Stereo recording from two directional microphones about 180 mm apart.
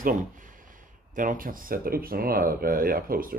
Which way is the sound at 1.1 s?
50° right (ahead or behind).